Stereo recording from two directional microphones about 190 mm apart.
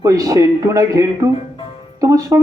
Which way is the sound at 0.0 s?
20° right (ahead or behind).